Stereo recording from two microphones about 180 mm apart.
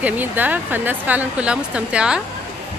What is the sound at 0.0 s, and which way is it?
Speech, 10° right (ahead or behind).